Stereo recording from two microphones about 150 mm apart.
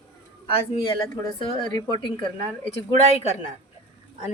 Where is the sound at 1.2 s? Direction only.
25° left (ahead or behind).